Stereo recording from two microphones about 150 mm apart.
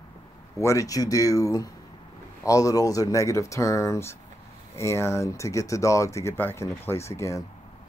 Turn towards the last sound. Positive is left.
turn(degrees=20)  # may be behind; listen again after turning